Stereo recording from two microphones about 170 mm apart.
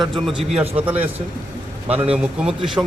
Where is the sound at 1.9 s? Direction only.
35° right (ahead or behind).